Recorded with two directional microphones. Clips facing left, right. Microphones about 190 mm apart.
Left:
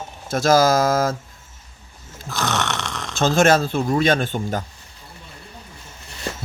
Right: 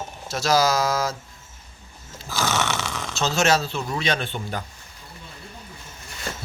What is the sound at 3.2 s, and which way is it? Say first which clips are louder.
Speech: left 5 dB; 50° left (ahead or behind).